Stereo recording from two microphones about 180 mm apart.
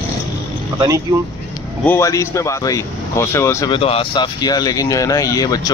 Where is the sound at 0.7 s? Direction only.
20° right (ahead or behind).